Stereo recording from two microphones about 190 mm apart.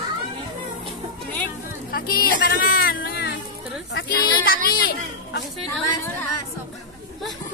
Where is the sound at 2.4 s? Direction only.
50° left (ahead or behind).